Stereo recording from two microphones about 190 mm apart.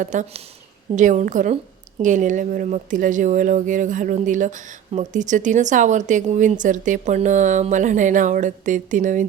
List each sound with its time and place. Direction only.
0.0 s speech: 40° right (ahead or behind)